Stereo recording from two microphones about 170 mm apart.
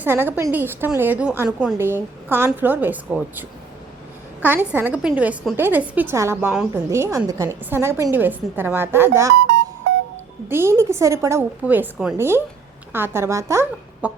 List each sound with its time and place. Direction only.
0.0 s a woman's voice: 10° right (ahead or behind)
4.4 s a woman's voice: 10° right (ahead or behind)
10.5 s a woman's voice: 15° right (ahead or behind)